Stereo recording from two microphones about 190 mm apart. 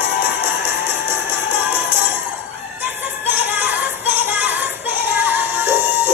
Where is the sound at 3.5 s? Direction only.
10° right (ahead or behind).